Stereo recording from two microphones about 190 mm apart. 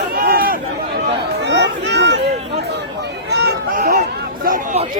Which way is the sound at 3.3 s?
55° right (ahead or behind).